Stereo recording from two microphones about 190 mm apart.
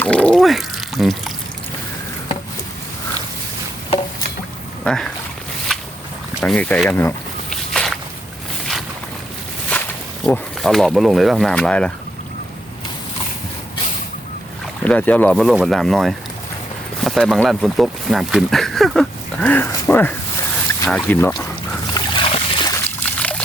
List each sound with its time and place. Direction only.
0.0 s pour: 5° left (ahead or behind)
4.8 s a sound: centre (ahead or behind)
6.4 s speech: 5° left (ahead or behind)
7.5 s walk: centre (ahead or behind)
10.2 s speech: 5° left (ahead or behind)
14.8 s speech: 5° left (ahead or behind)
21.9 s a sound: 25° left (ahead or behind)
22.7 s trickle: 5° left (ahead or behind)